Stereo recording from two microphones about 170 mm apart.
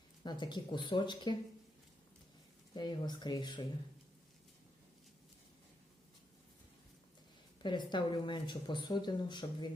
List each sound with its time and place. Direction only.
0.3 s speech: 25° left (ahead or behind)
2.7 s speech: 25° left (ahead or behind)
7.6 s speech: 25° left (ahead or behind)